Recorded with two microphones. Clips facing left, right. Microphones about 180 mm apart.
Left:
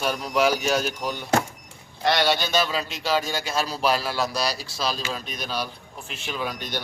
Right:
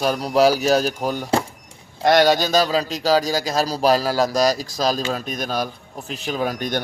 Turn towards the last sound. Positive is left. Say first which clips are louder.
# right 7 dB
turn(degrees=-50)  # may be behind; listen again after turning